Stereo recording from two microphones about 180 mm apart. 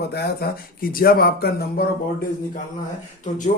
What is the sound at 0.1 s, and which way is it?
Speech, 65° left (ahead or behind).